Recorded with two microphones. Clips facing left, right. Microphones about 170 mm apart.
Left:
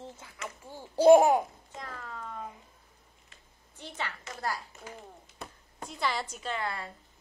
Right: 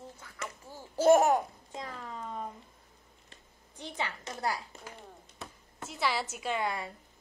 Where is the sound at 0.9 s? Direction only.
15° left (ahead or behind).